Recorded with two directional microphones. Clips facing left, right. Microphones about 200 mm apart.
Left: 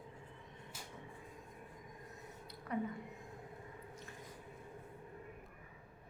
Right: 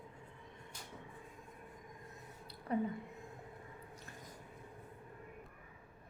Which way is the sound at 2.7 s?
30° right (ahead or behind).